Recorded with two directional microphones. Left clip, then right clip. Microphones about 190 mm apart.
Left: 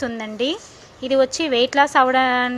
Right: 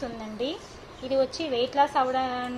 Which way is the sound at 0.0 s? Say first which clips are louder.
Left 8 dB; 40° left (ahead or behind).